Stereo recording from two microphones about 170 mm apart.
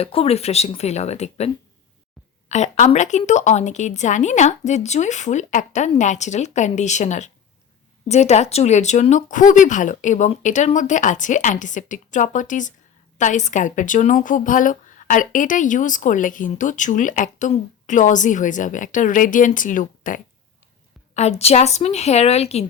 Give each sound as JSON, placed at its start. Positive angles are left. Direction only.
{"t": 0.0, "sound": "a woman's voice", "side_deg": 35}
{"t": 2.5, "sound": "speech", "side_deg": 45}
{"t": 21.2, "sound": "a woman's voice", "side_deg": 40}